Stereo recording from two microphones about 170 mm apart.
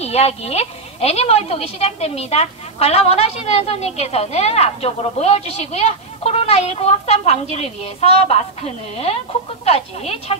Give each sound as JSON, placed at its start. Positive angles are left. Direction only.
{"t": 0.0, "sound": "speech", "side_deg": 35}